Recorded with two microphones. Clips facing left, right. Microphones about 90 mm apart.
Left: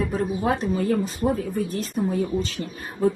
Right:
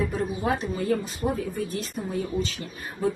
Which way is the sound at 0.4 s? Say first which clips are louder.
Left 2 dB; 35° left (ahead or behind).